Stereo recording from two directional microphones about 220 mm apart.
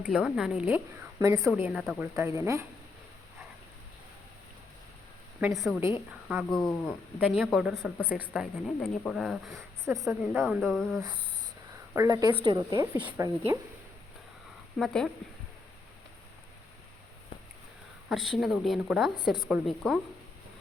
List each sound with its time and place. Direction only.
0.1 s a woman's voice: 5° right (ahead or behind)
1.2 s a woman's voice: 15° right (ahead or behind)
1.5 s a woman's voice: 5° right (ahead or behind)
5.4 s a woman's voice: centre (ahead or behind)
9.9 s a woman's voice: 10° right (ahead or behind)
10.4 s a woman's voice: centre (ahead or behind)
11.9 s a woman's voice: 15° right (ahead or behind)
14.8 s a woman's voice: centre (ahead or behind)
18.1 s a woman's voice: centre (ahead or behind)